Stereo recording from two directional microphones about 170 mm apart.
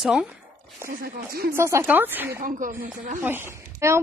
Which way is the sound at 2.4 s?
50° right (ahead or behind).